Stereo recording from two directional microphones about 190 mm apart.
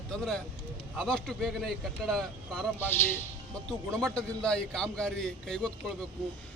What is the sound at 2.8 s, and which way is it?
Speech, 10° left (ahead or behind).